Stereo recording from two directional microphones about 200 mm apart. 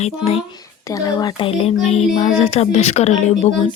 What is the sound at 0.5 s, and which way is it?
A child's voice, 15° left (ahead or behind).